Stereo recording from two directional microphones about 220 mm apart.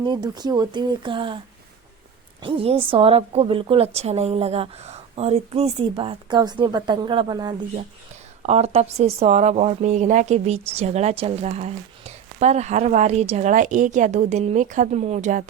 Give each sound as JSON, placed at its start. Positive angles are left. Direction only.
{"t": 0.0, "sound": "a woman's voice", "side_deg": -20}
{"t": 2.4, "sound": "a woman's voice", "side_deg": -25}